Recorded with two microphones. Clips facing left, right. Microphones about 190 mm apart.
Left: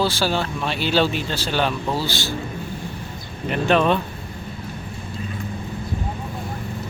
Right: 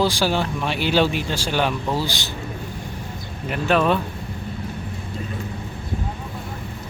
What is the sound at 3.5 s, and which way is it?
Speech, 5° right (ahead or behind).